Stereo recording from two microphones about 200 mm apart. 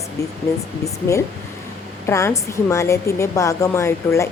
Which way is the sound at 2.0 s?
15° left (ahead or behind).